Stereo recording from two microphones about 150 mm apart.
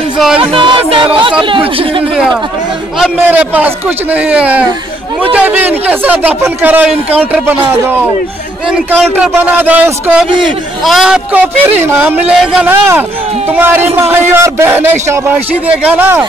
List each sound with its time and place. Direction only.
0.4 s music: 35° right (ahead or behind)
3.3 s speech: 10° right (ahead or behind)
8.6 s a man's voice: 5° right (ahead or behind)